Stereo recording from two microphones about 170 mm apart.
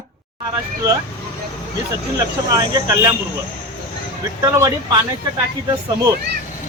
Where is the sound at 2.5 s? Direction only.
20° right (ahead or behind).